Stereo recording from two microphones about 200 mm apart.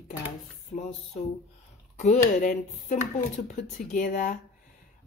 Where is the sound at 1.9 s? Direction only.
35° left (ahead or behind).